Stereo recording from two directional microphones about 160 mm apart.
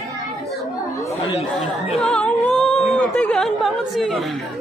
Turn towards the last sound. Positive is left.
turn(degrees=0)  # may be behind; listen again after turning